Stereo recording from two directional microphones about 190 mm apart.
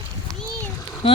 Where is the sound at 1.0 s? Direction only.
30° left (ahead or behind).